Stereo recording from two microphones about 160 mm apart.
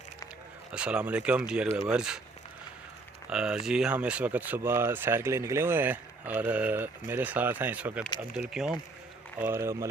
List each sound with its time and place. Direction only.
0.7 s speech: 5° right (ahead or behind)
3.2 s speech: 5° right (ahead or behind)
9.4 s speech: 15° right (ahead or behind)